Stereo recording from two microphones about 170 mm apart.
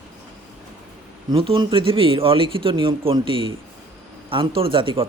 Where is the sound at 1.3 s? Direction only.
30° right (ahead or behind).